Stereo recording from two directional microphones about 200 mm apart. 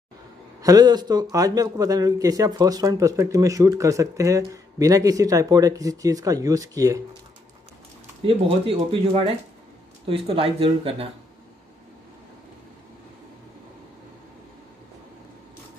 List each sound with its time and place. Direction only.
0.6 s a man's voice: 20° right (ahead or behind)
8.2 s speech: 30° right (ahead or behind)